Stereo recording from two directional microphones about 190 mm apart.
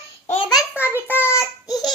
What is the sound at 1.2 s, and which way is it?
Child singing, 15° left (ahead or behind).